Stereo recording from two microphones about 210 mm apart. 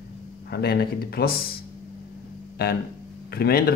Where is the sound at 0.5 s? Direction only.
50° left (ahead or behind).